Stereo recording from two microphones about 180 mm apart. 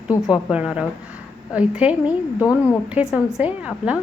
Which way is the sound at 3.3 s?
5° right (ahead or behind).